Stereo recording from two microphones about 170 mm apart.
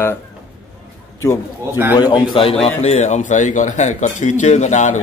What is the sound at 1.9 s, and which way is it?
A man's voice, 25° left (ahead or behind).